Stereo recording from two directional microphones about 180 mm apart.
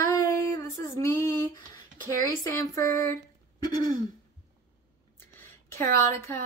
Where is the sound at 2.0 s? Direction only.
15° left (ahead or behind).